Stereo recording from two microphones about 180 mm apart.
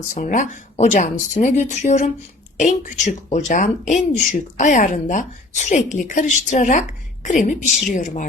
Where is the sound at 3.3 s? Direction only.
45° left (ahead or behind).